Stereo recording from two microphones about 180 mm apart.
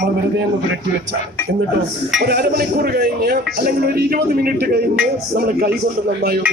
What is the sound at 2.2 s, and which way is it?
Speech, 60° right (ahead or behind).